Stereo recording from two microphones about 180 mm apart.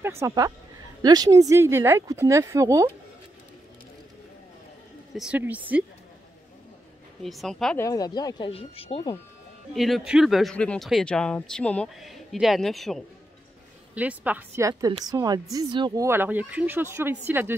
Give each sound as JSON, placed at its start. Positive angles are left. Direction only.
{"t": 0.0, "sound": "speech", "side_deg": -15}
{"t": 5.1, "sound": "speech", "side_deg": -5}
{"t": 7.2, "sound": "speech", "side_deg": 0}
{"t": 7.8, "sound": "speech", "side_deg": 20}
{"t": 9.8, "sound": "speech", "side_deg": 0}
{"t": 16.1, "sound": "speech", "side_deg": -10}